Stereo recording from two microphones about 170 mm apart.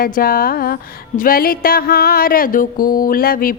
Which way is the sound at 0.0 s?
60° left (ahead or behind).